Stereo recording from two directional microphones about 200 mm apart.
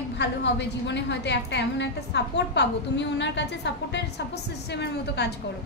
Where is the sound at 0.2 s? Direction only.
60° left (ahead or behind).